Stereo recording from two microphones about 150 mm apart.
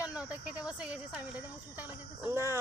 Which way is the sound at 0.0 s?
10° right (ahead or behind).